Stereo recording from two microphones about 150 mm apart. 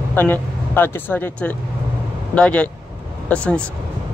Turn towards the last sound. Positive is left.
turn(degrees=10)  # may be behind; listen again after turning